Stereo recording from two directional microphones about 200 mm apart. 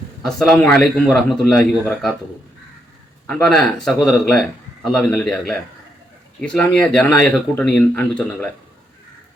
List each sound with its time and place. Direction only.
0.2 s speech: centre (ahead or behind)
3.2 s speech: 5° left (ahead or behind)